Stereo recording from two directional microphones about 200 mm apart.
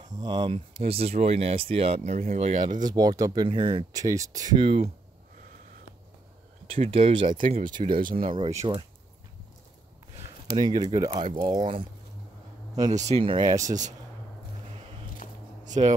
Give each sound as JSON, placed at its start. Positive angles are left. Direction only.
{"t": 0.0, "sound": "speech", "side_deg": -20}
{"t": 2.8, "sound": "speech", "side_deg": -20}
{"t": 6.7, "sound": "speech", "side_deg": -30}
{"t": 8.2, "sound": "speech", "side_deg": -25}
{"t": 10.6, "sound": "speech", "side_deg": -25}
{"t": 12.9, "sound": "speech", "side_deg": -35}
{"t": 15.2, "sound": "a sound", "side_deg": 40}
{"t": 15.6, "sound": "a sound", "side_deg": -35}